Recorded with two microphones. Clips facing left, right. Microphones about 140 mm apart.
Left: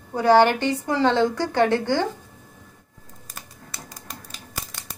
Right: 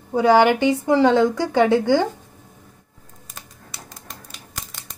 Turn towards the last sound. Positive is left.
turn(degrees=5)  # may be behind; listen again after turning